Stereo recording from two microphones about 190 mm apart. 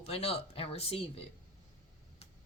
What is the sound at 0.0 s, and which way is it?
Speech, 30° left (ahead or behind).